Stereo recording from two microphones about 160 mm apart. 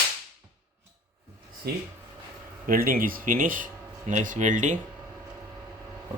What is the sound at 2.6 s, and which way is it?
Speech, 65° right (ahead or behind).